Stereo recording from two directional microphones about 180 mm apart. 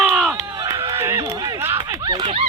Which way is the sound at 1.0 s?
15° right (ahead or behind).